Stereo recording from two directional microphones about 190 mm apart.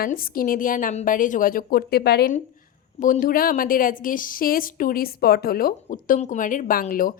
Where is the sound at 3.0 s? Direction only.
45° left (ahead or behind).